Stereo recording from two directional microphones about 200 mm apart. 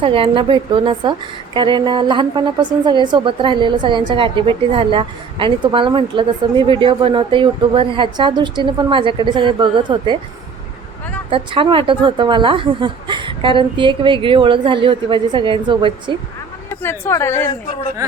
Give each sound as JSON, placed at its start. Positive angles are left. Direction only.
{"t": 0.0, "sound": "a woman's voice", "side_deg": -25}
{"t": 11.3, "sound": "a woman's voice", "side_deg": -25}
{"t": 16.6, "sound": "a woman's voice", "side_deg": 10}